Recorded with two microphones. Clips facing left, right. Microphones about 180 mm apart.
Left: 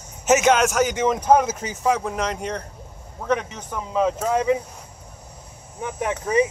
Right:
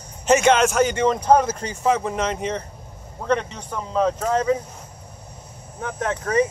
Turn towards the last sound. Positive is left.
turn(degrees=15)  # may be behind; listen again after turning